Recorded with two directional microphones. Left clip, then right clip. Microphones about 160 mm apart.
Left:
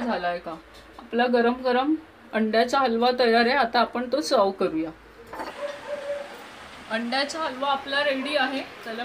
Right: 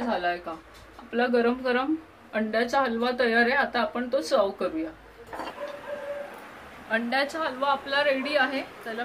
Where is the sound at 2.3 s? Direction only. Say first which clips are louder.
Left 3 dB; 55° left (ahead or behind).